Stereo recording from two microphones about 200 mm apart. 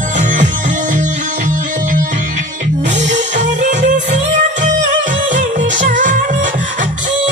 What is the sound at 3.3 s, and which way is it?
Music, 35° right (ahead or behind).